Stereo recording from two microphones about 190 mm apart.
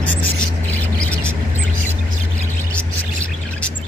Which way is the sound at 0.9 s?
5° left (ahead or behind).